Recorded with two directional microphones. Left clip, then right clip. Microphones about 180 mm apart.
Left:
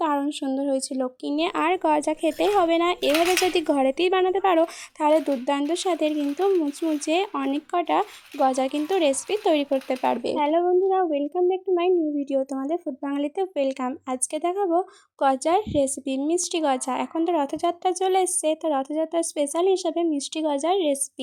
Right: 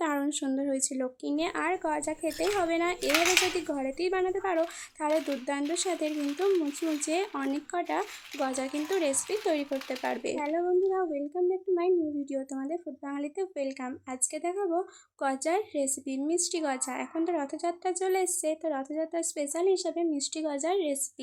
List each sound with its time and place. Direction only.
0.0 s speech: 20° left (ahead or behind)
3.7 s speech: 45° left (ahead or behind)